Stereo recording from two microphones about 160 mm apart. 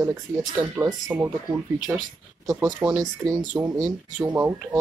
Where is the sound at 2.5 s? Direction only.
25° right (ahead or behind).